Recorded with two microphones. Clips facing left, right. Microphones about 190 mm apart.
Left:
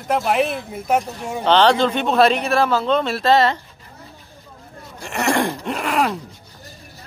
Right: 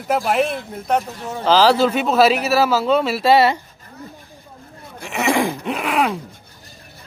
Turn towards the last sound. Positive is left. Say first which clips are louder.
# right 1 dB
turn(degrees=0)  # may be behind; listen again after turning